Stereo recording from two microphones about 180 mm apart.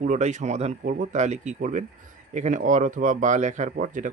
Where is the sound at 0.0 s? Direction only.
40° right (ahead or behind).